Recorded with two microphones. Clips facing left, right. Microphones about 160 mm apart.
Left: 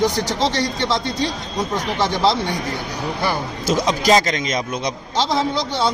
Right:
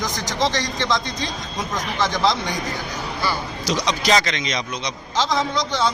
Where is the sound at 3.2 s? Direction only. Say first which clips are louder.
Left 2 dB; 55° left (ahead or behind).